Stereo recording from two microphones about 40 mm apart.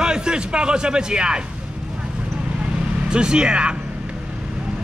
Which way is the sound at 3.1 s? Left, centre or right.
Right.